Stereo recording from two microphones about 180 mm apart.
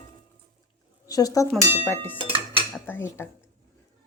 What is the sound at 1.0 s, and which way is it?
Speech, 20° left (ahead or behind).